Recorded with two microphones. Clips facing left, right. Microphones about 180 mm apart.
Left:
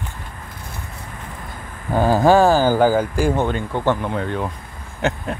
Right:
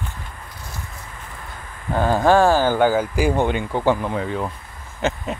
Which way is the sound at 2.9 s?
10° right (ahead or behind).